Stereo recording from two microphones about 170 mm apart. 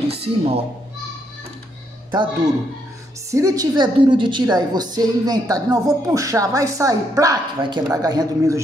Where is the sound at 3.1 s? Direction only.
15° right (ahead or behind).